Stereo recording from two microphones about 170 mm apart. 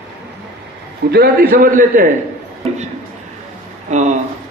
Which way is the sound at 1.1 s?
60° right (ahead or behind).